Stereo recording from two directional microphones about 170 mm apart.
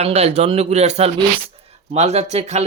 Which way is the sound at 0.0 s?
40° right (ahead or behind).